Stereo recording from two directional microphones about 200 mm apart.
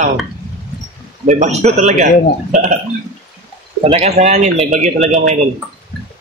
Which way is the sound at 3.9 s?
30° right (ahead or behind).